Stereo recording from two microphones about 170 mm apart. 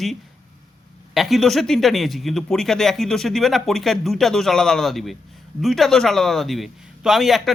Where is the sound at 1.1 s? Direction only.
Centre (ahead or behind).